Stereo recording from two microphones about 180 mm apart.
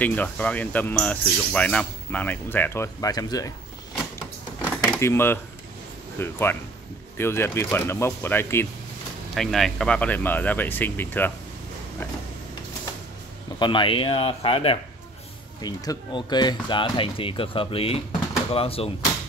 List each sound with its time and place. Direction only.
0.0 s speech: 10° left (ahead or behind)
4.6 s drawer open or close: 5° left (ahead or behind)
6.1 s speech: 10° left (ahead or behind)
9.3 s speech: centre (ahead or behind)
13.6 s speech: 25° left (ahead or behind)